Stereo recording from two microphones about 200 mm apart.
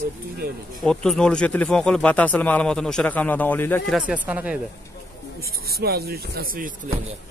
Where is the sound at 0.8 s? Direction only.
5° left (ahead or behind).